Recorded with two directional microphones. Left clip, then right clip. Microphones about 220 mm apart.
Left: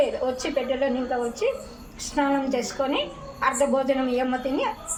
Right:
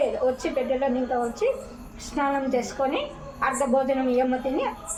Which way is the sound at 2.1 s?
15° right (ahead or behind).